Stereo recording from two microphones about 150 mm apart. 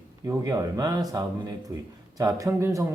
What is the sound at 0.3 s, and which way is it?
Speech, 20° right (ahead or behind).